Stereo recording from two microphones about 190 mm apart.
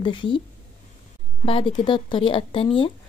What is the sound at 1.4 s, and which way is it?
Speech, 30° left (ahead or behind).